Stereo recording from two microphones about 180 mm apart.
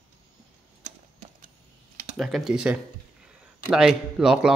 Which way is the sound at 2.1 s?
Centre (ahead or behind).